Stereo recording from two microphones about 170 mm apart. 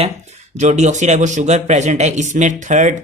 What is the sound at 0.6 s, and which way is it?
Speech, 45° right (ahead or behind).